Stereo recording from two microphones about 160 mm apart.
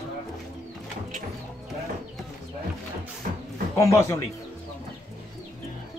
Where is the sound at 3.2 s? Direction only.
60° right (ahead or behind).